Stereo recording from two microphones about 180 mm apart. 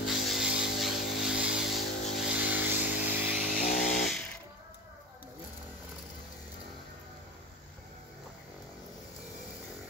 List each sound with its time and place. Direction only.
0.0 s a sound: centre (ahead or behind)
2.7 s vehicle: 10° right (ahead or behind)
3.5 s vehicle: 50° left (ahead or behind)